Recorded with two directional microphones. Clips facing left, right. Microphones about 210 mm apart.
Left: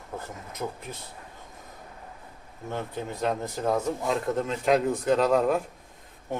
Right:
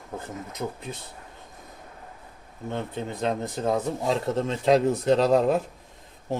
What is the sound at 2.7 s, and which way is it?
Speech, 25° right (ahead or behind).